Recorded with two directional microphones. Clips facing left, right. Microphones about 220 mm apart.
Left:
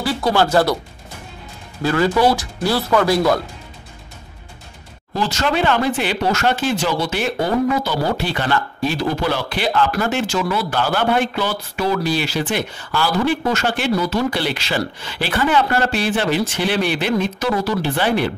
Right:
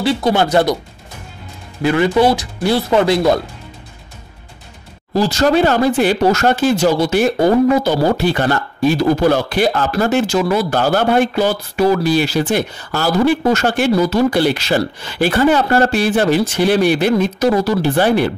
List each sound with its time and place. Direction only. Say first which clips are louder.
0.0 s speech: right 3 dB; 20° right (ahead or behind)
1.8 s speech: right 3 dB; 20° right (ahead or behind)
5.1 s speech: right 7 dB; 35° right (ahead or behind)